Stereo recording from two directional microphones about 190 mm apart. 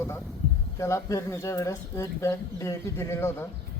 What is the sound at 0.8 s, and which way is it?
Speech, 15° left (ahead or behind).